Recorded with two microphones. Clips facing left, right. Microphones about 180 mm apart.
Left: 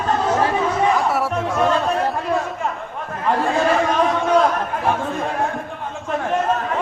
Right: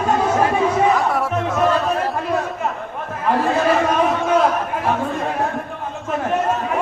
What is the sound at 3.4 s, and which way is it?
Chatter, 5° right (ahead or behind).